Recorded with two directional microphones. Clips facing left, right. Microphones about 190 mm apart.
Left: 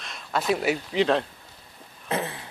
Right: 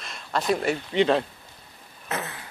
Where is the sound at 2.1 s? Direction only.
30° left (ahead or behind).